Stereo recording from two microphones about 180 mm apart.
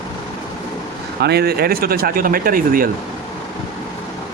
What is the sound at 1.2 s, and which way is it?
Speech, 65° right (ahead or behind).